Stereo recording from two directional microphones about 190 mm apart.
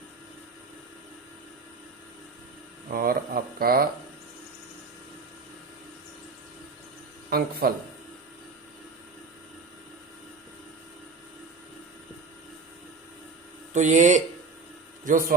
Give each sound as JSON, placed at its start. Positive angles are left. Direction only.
{"t": 2.9, "sound": "speech", "side_deg": -50}
{"t": 7.3, "sound": "speech", "side_deg": -55}
{"t": 13.7, "sound": "a man's voice", "side_deg": -40}